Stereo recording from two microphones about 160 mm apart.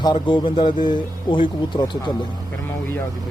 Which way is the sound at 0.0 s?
30° left (ahead or behind).